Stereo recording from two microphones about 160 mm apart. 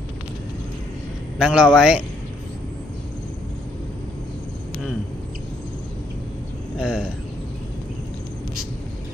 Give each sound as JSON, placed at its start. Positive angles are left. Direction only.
{"t": 1.4, "sound": "a man's voice", "side_deg": -5}
{"t": 6.8, "sound": "speech", "side_deg": -5}